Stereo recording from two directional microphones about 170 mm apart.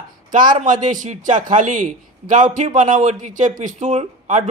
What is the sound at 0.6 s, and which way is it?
Speech, 50° right (ahead or behind).